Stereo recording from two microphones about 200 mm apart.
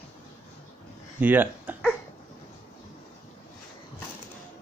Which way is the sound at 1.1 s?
10° right (ahead or behind).